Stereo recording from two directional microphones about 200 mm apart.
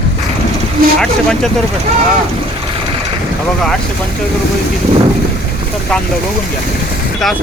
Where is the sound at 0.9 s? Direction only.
5° left (ahead or behind).